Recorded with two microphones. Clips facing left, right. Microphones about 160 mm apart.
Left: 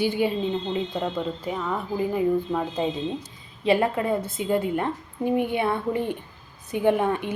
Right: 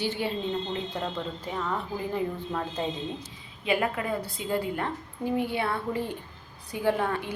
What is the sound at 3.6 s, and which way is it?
A woman's voice, 30° left (ahead or behind).